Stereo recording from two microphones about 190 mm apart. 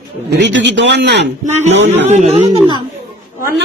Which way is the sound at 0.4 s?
70° right (ahead or behind).